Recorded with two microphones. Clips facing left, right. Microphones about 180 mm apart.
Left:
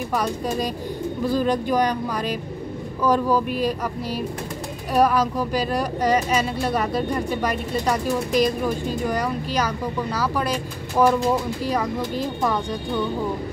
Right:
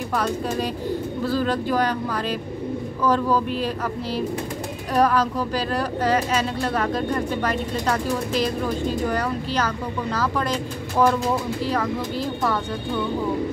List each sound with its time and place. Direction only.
0.1 s speech: 15° left (ahead or behind)